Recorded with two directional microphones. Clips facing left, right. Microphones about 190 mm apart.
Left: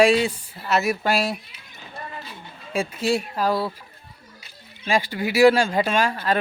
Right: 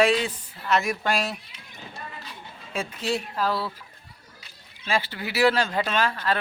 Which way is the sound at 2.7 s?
10° left (ahead or behind).